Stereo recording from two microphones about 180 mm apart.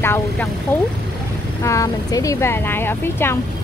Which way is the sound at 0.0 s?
10° left (ahead or behind).